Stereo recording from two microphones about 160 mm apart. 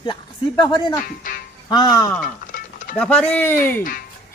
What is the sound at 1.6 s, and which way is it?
Speech, 25° left (ahead or behind).